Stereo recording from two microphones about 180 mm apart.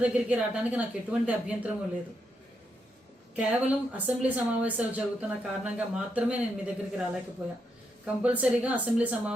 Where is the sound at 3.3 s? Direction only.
10° right (ahead or behind).